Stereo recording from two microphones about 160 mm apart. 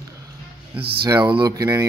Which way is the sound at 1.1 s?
30° right (ahead or behind).